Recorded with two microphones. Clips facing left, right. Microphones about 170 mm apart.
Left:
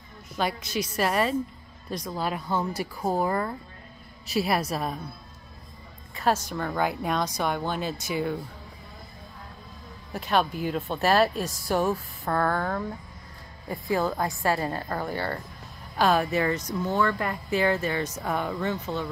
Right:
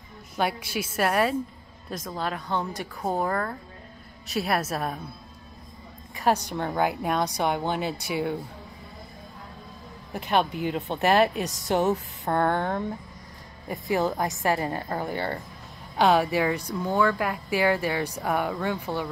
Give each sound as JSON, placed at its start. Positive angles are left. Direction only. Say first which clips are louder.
{"t": 0.4, "sound": "speech", "louder": "right 1 dB", "side_deg": -10}
{"t": 6.1, "sound": "a woman's voice", "louder": "right 1 dB", "side_deg": -15}
{"t": 6.9, "sound": "speech", "louder": "right 1 dB", "side_deg": -5}
{"t": 7.8, "sound": "speech", "louder": "right 1 dB", "side_deg": -65}
{"t": 10.1, "sound": "speech", "louder": "right 1 dB", "side_deg": -15}